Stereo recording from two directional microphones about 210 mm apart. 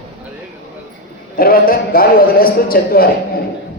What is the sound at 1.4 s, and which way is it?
A man's voice, 45° left (ahead or behind).